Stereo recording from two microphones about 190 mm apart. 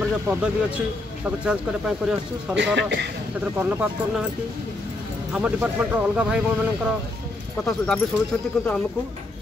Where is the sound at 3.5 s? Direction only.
10° right (ahead or behind).